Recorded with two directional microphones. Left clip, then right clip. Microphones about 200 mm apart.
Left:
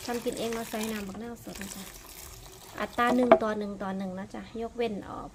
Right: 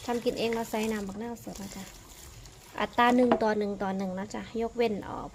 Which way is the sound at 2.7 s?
15° right (ahead or behind).